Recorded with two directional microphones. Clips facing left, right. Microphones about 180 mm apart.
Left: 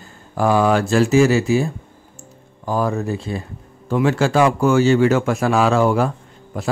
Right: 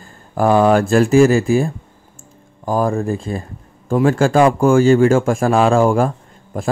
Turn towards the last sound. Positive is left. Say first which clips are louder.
# right 3 dB
turn(degrees=-45)  # may be behind; listen again after turning